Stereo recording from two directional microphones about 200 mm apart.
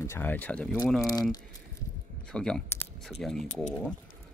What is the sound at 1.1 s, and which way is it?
Speech, 20° left (ahead or behind).